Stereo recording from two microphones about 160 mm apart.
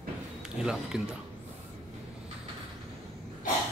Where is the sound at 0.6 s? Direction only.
5° right (ahead or behind).